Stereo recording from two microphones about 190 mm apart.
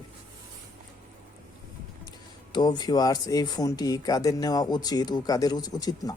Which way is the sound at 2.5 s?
20° left (ahead or behind).